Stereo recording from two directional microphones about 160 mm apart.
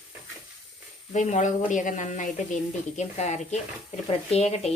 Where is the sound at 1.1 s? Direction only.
50° left (ahead or behind).